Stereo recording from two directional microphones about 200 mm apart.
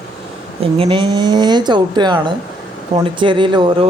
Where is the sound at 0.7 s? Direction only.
25° right (ahead or behind).